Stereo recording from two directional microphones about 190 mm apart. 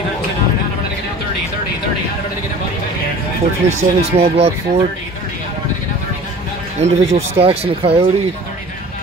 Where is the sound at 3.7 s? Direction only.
35° right (ahead or behind).